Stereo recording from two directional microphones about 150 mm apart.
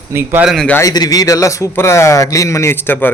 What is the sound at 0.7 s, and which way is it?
A man's voice, 25° left (ahead or behind).